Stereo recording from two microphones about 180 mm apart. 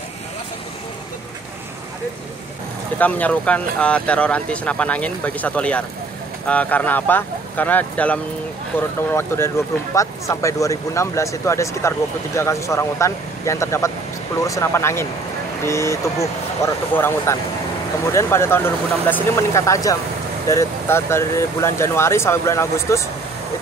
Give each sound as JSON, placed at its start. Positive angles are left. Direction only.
{"t": 3.0, "sound": "speech", "side_deg": 10}